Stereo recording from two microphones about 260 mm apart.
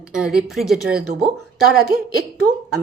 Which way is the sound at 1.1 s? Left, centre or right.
Right.